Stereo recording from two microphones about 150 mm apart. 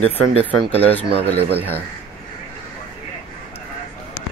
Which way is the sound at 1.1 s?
90° right.